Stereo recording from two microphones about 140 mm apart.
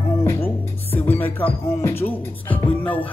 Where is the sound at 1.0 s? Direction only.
15° left (ahead or behind).